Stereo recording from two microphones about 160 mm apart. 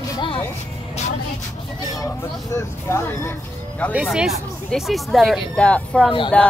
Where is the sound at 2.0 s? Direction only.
15° left (ahead or behind).